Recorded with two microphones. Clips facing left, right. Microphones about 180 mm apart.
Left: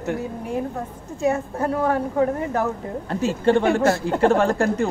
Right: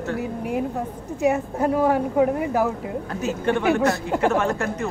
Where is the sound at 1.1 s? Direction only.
15° right (ahead or behind).